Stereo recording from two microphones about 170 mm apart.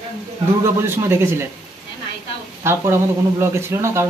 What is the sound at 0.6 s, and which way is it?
Speech, 15° right (ahead or behind).